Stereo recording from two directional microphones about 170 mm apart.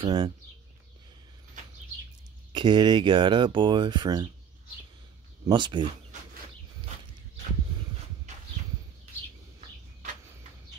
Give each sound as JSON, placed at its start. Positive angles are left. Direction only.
{"t": 0.0, "sound": "speech", "side_deg": -25}
{"t": 2.5, "sound": "speech", "side_deg": -30}
{"t": 5.5, "sound": "speech", "side_deg": -25}